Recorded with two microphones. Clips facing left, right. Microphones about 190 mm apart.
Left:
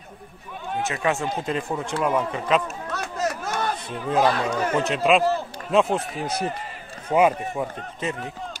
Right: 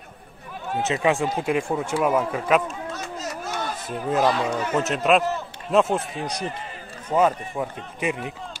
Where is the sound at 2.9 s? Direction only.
60° left (ahead or behind).